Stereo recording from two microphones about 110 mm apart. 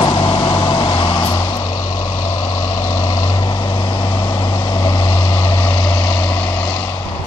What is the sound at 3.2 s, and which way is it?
Vehicle, 45° left (ahead or behind).